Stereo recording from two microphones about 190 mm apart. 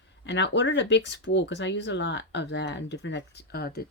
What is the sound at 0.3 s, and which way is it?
Speech, 70° left (ahead or behind).